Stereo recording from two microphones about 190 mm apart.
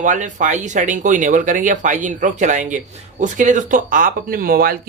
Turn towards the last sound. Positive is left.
turn(degrees=-50)  # may be behind; listen again after turning